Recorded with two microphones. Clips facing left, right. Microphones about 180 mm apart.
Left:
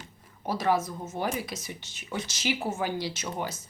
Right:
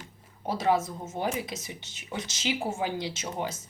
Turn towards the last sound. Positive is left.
turn(degrees=-25)  # may be behind; listen again after turning